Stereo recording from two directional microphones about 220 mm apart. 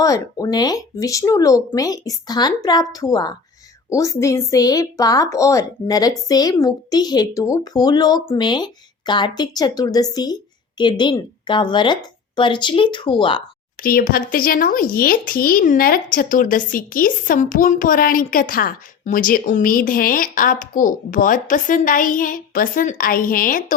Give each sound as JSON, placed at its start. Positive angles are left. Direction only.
{"t": 0.0, "sound": "a woman's voice", "side_deg": 15}
{"t": 13.8, "sound": "speech", "side_deg": 40}